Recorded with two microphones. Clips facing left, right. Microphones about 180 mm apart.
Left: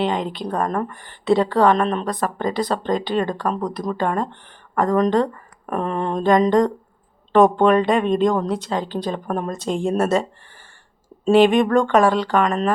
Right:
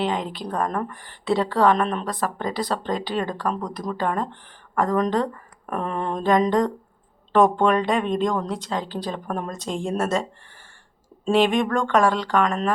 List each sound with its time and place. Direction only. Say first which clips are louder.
0.0 s speech: left 3 dB; centre (ahead or behind)
11.3 s speech: left 5 dB; centre (ahead or behind)